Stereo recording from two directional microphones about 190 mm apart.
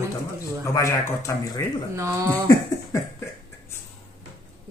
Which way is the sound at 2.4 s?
20° left (ahead or behind).